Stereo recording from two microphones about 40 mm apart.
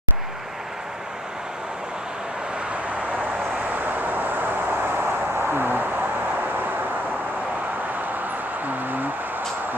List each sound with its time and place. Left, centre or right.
3.7 s vehicle: right